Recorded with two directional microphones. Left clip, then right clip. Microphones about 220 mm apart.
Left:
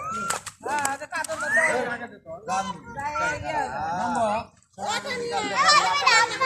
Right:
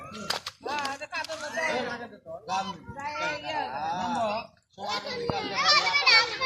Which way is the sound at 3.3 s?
55° left (ahead or behind).